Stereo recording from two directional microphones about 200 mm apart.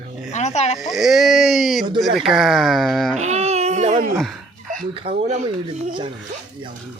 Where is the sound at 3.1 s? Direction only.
35° right (ahead or behind).